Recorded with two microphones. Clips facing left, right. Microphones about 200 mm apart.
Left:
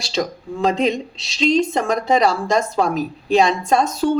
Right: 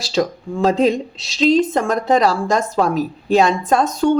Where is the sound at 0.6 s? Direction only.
5° right (ahead or behind).